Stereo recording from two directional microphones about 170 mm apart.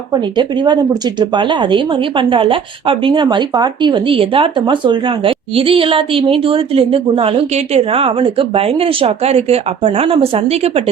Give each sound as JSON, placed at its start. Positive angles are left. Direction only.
{"t": 0.1, "sound": "speech", "side_deg": -25}